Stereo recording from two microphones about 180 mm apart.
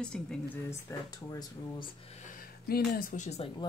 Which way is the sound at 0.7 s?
20° left (ahead or behind).